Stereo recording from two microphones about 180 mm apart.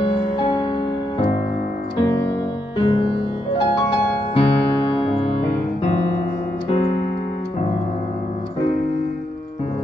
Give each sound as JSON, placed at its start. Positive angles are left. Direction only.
{"t": 0.0, "sound": "music", "side_deg": 30}
{"t": 2.8, "sound": "music", "side_deg": 25}